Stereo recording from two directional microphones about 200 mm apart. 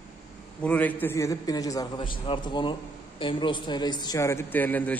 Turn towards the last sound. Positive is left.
turn(degrees=10)  # may be behind; listen again after turning